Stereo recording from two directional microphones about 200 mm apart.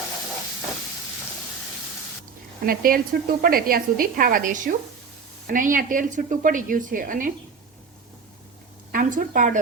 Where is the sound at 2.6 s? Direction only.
45° right (ahead or behind).